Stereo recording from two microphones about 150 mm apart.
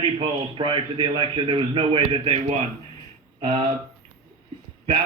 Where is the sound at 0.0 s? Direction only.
35° right (ahead or behind).